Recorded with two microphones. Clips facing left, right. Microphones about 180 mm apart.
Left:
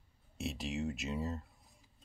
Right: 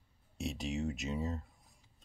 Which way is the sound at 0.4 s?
Centre (ahead or behind).